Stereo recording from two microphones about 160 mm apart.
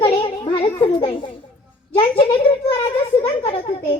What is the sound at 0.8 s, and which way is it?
A child's voice, 30° left (ahead or behind).